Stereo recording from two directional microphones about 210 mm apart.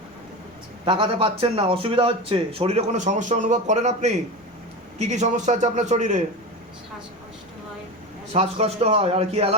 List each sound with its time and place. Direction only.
0.9 s a man's voice: 25° right (ahead or behind)
8.3 s a man's voice: 30° right (ahead or behind)